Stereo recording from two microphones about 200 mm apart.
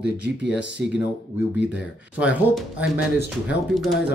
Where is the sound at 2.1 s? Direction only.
5° right (ahead or behind).